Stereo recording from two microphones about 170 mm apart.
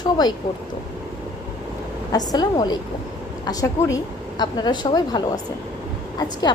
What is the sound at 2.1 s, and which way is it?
A woman's voice, 25° left (ahead or behind).